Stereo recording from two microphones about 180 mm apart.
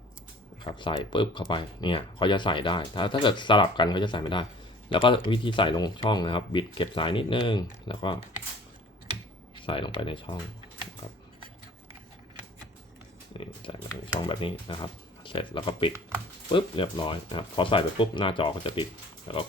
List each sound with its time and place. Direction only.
0.6 s speech: 25° left (ahead or behind)
9.6 s speech: 30° left (ahead or behind)
13.3 s speech: 25° left (ahead or behind)